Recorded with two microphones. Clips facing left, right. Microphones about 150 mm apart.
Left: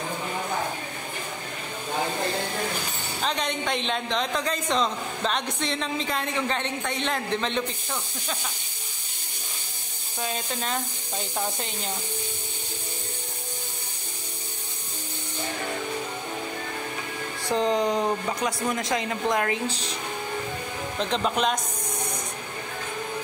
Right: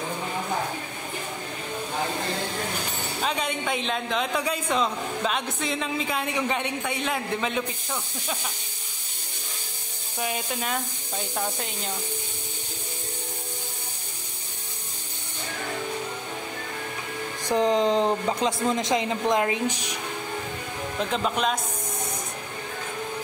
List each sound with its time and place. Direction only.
3.2 s a man's voice: 5° right (ahead or behind)
10.2 s a man's voice: 10° right (ahead or behind)
17.5 s speech: 20° right (ahead or behind)
21.0 s speech: centre (ahead or behind)